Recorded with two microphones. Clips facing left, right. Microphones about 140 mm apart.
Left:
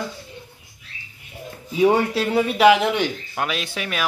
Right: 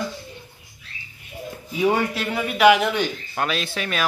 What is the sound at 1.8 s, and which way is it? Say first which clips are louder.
Speech: left 3 dB; 30° left (ahead or behind).